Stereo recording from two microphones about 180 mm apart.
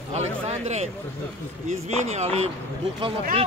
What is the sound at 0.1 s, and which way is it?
Speech, 40° right (ahead or behind).